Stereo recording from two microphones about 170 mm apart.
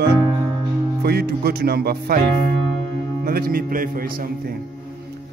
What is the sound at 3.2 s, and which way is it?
Speech, 60° right (ahead or behind).